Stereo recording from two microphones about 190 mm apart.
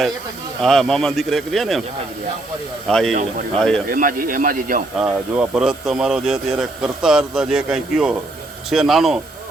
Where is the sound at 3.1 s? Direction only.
40° right (ahead or behind).